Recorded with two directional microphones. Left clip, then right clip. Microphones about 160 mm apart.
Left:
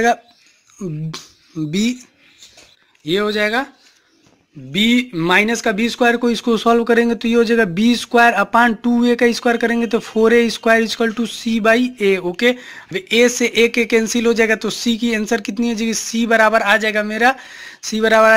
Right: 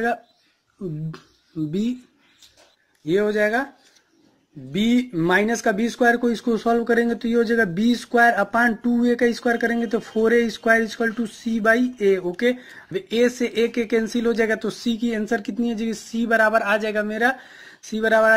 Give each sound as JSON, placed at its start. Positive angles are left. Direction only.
{"t": 0.7, "sound": "speech", "side_deg": 30}
{"t": 3.1, "sound": "speech", "side_deg": 20}
{"t": 4.7, "sound": "speech", "side_deg": 15}